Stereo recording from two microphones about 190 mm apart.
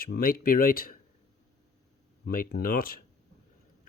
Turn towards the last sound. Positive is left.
turn(degrees=50)  # may be behind; listen again after turning